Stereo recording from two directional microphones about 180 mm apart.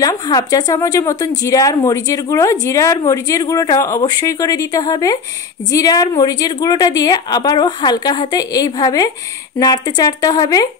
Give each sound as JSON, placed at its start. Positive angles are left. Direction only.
{"t": 0.0, "sound": "a woman's voice", "side_deg": 20}